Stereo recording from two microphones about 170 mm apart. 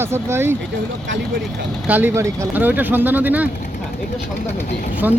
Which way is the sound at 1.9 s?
15° right (ahead or behind).